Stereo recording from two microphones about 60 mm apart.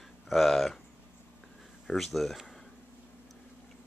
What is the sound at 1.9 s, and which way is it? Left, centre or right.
Speech, centre.